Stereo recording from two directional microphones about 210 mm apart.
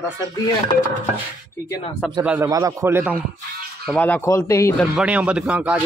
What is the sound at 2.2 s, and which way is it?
Speech, 15° right (ahead or behind).